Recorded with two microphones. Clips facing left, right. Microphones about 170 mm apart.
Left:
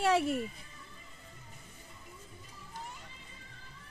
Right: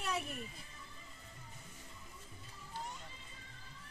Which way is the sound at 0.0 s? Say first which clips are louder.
Left 12 dB; 85° left.